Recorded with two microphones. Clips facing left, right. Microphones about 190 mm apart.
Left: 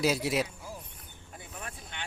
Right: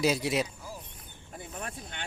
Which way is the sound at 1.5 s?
40° right (ahead or behind).